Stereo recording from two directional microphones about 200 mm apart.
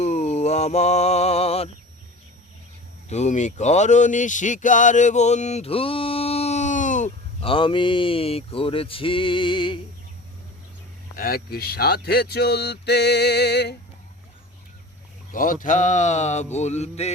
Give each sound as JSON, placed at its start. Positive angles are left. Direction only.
{"t": 0.0, "sound": "music", "side_deg": 35}
{"t": 3.1, "sound": "speech", "side_deg": 35}
{"t": 11.2, "sound": "speech", "side_deg": 50}
{"t": 15.3, "sound": "speech", "side_deg": 45}